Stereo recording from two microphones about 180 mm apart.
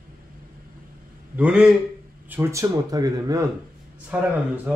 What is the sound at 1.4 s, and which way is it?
Speech, 5° right (ahead or behind).